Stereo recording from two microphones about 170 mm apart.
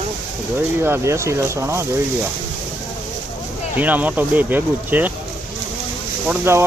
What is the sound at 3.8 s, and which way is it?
Speech, 10° right (ahead or behind).